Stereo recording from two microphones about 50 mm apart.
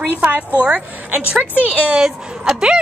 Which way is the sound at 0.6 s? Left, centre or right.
Right.